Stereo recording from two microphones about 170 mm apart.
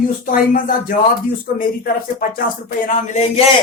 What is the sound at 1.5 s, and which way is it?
Speech, 55° left (ahead or behind).